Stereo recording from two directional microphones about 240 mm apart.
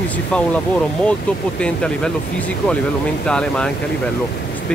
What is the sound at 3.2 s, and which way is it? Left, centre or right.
Speech, centre.